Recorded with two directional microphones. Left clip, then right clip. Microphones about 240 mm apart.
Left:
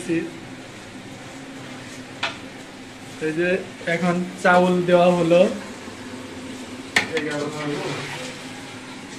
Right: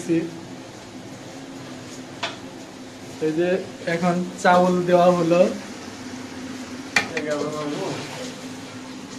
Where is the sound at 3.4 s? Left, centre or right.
Centre.